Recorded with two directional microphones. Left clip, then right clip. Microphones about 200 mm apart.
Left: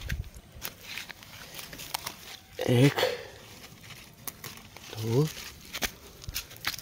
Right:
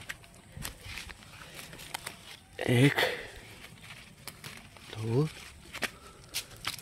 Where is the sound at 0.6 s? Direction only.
20° left (ahead or behind).